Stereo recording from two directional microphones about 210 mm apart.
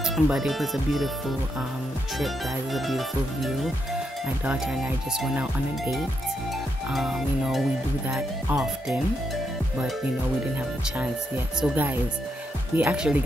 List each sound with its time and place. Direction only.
0.0 s speech: centre (ahead or behind)
2.1 s speech: centre (ahead or behind)
11.6 s speech: 5° right (ahead or behind)